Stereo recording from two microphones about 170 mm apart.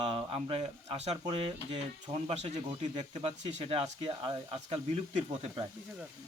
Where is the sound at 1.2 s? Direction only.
25° right (ahead or behind).